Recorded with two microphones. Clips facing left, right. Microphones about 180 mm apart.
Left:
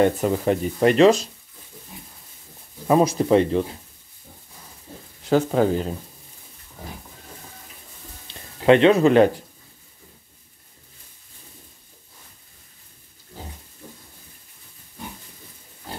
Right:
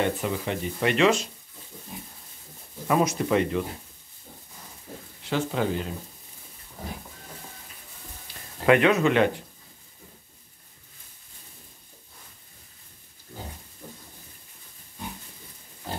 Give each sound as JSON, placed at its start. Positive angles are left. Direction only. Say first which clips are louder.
{"t": 0.0, "sound": "speech", "louder": "left 8 dB", "side_deg": 45}
{"t": 2.9, "sound": "speech", "louder": "left 6 dB", "side_deg": 30}
{"t": 5.3, "sound": "speech", "louder": "left 8 dB", "side_deg": 40}
{"t": 8.3, "sound": "speech", "louder": "left 5 dB", "side_deg": 25}